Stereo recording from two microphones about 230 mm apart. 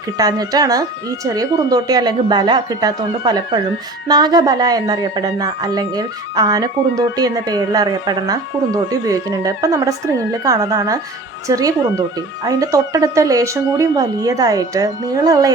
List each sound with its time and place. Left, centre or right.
0.2 s speech: centre